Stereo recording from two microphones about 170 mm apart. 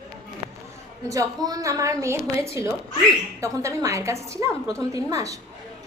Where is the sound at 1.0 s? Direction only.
20° right (ahead or behind).